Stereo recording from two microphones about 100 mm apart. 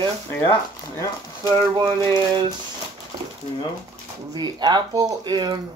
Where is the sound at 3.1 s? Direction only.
45° right (ahead or behind).